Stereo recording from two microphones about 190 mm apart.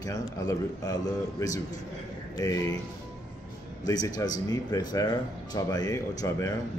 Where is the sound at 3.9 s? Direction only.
20° left (ahead or behind).